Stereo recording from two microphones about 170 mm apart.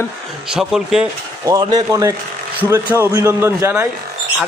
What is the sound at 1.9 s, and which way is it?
Speech, 20° right (ahead or behind).